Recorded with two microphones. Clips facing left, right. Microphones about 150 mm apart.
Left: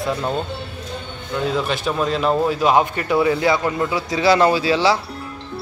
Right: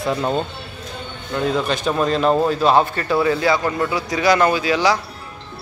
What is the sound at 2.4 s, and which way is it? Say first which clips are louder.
A man's voice: right 1 dB; 10° left (ahead or behind).